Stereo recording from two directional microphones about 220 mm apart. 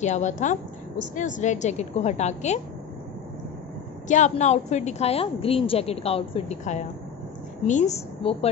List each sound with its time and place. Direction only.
0.0 s a woman's voice: 30° left (ahead or behind)
4.1 s a woman's voice: 35° left (ahead or behind)